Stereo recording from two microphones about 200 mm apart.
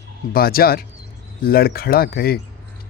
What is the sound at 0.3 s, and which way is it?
Speech, 50° left (ahead or behind).